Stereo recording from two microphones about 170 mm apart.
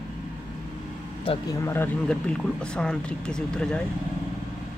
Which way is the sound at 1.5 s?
15° left (ahead or behind).